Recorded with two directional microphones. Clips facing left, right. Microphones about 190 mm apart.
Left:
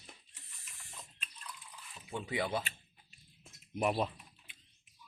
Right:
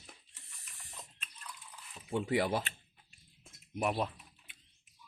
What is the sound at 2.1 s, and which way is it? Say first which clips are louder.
Speech: right 6 dB; 50° right (ahead or behind).